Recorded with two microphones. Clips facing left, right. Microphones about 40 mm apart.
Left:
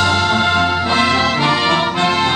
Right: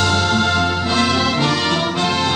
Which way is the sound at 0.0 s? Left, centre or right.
Centre.